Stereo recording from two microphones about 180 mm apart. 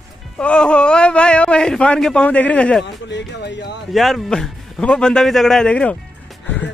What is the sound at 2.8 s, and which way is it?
Speech, 75° left (ahead or behind).